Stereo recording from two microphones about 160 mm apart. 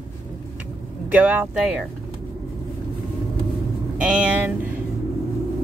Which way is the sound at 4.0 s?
10° right (ahead or behind).